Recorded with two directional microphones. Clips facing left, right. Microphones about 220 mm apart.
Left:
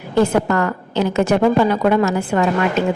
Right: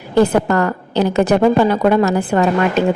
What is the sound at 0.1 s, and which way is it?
Speech, 35° right (ahead or behind).